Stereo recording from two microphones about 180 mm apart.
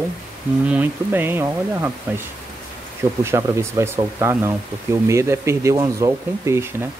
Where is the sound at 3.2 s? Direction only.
15° right (ahead or behind).